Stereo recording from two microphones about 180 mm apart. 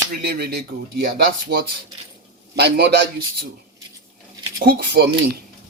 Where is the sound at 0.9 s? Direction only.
65° right (ahead or behind).